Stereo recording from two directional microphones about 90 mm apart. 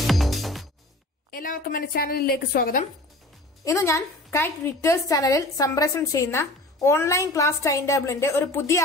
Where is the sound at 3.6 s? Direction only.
35° left (ahead or behind).